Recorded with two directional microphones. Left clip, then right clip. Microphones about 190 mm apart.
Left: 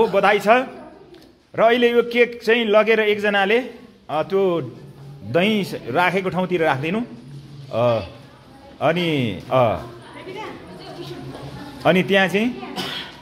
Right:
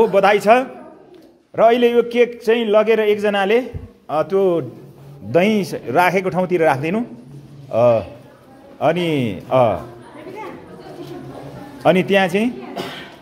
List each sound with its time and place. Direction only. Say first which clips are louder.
0.0 s a man's voice: right 3 dB; 15° right (ahead or behind)
11.8 s a man's voice: right 2 dB; 10° right (ahead or behind)